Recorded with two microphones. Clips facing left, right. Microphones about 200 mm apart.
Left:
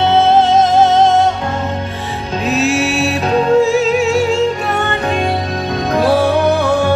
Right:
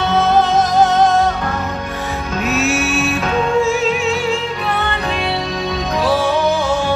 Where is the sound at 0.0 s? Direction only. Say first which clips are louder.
Left 4 dB; 25° left (ahead or behind).